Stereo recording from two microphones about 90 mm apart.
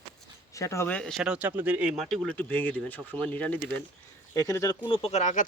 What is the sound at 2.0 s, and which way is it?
Speech, 5° left (ahead or behind).